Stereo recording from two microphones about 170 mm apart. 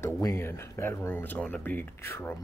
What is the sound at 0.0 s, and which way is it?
Speech, 15° left (ahead or behind).